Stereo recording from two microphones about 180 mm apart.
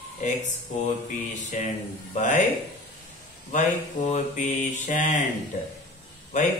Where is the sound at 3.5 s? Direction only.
40° left (ahead or behind).